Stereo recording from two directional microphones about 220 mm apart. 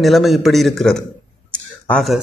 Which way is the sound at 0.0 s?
Centre (ahead or behind).